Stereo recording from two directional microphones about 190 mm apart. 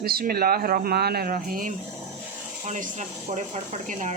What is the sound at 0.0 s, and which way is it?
Speech, 55° right (ahead or behind).